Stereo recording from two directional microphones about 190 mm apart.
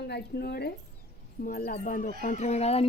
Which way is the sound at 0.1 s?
60° left (ahead or behind).